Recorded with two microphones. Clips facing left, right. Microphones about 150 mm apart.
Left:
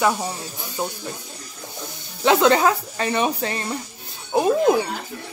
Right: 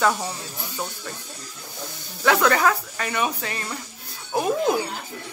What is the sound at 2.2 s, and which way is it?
Speech, 25° left (ahead or behind).